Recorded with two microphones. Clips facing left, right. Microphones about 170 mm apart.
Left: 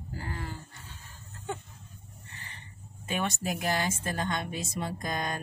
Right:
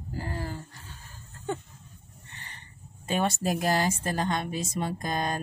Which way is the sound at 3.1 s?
35° right (ahead or behind).